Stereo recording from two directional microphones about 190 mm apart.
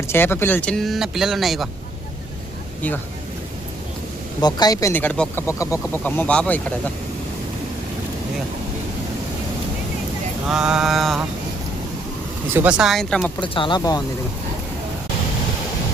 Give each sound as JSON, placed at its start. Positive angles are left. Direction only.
{"t": 0.1, "sound": "speech", "side_deg": 10}
{"t": 4.4, "sound": "speech", "side_deg": 20}
{"t": 10.5, "sound": "speech", "side_deg": -5}
{"t": 12.5, "sound": "speech", "side_deg": -5}
{"t": 13.4, "sound": "speech", "side_deg": 25}